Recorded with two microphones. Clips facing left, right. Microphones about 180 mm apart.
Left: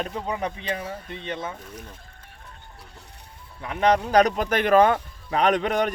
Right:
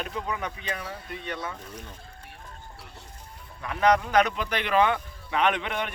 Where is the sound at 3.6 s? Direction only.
30° left (ahead or behind).